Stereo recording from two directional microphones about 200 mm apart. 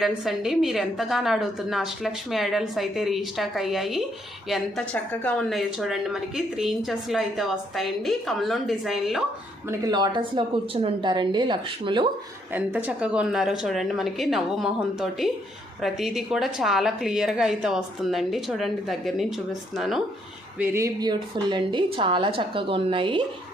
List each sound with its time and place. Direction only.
0.0 s a woman's voice: centre (ahead or behind)
9.6 s speech: 20° right (ahead or behind)
12.5 s a woman's voice: 10° right (ahead or behind)
20.6 s speech: 15° right (ahead or behind)